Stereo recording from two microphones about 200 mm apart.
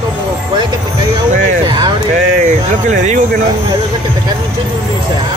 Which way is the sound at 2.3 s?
35° right (ahead or behind).